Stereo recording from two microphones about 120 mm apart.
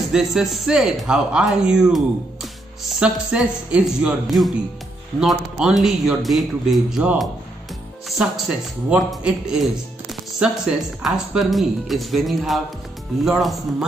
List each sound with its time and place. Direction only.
0.1 s a man's voice: 5° right (ahead or behind)
11.0 s a man's voice: centre (ahead or behind)